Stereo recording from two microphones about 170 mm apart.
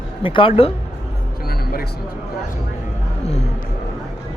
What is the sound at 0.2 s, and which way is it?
Speech, 30° left (ahead or behind).